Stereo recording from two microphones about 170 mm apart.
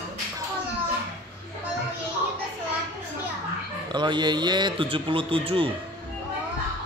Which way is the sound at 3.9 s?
25° right (ahead or behind).